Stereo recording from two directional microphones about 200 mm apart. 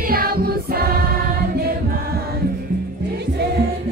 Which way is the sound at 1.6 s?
50° right (ahead or behind).